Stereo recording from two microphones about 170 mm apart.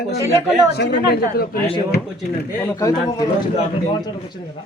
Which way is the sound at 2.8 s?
20° left (ahead or behind).